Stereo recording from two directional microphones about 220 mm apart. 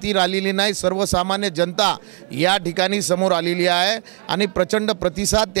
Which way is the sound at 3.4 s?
10° right (ahead or behind).